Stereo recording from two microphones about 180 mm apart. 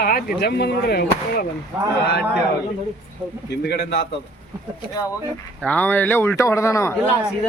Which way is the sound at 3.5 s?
70° left (ahead or behind).